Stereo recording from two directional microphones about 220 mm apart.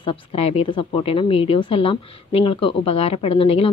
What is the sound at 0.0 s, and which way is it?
A woman's voice, 25° left (ahead or behind).